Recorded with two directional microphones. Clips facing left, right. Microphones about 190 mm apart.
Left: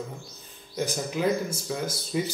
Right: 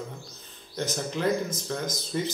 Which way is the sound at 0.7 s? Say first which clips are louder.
Left 2 dB; 10° left (ahead or behind).